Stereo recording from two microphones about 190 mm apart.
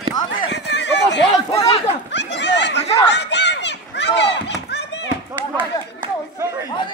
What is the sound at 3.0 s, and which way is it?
Children playing, 65° left (ahead or behind).